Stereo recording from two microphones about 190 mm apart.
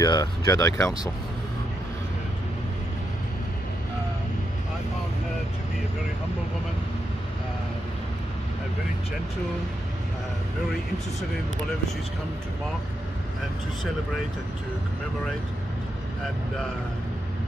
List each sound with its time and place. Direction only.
0.0 s speech: 20° left (ahead or behind)